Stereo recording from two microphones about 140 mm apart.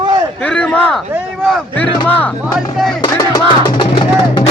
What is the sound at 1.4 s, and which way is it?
Speech, 5° left (ahead or behind).